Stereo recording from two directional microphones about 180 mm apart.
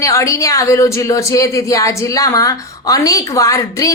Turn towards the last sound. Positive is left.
turn(degrees=20)  # may be behind; listen again after turning